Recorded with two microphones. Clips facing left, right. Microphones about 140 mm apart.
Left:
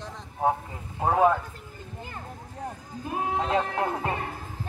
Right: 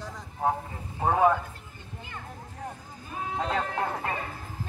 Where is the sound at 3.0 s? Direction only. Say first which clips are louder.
Left 6 dB; 65° left (ahead or behind).